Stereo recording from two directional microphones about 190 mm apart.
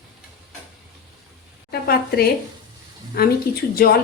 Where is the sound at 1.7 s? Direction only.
55° left (ahead or behind).